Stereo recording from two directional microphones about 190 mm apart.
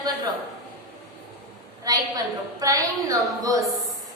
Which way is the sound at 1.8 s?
20° right (ahead or behind).